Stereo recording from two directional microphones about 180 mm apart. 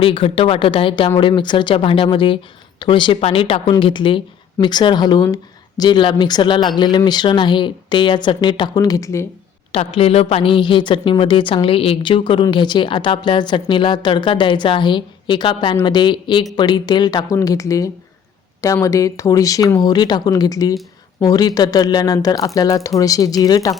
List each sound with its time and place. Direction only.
0.0 s a woman's voice: 30° left (ahead or behind)
9.7 s a woman's voice: 35° left (ahead or behind)